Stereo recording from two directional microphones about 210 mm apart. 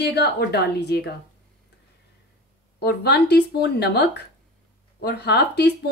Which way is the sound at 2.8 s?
50° left (ahead or behind).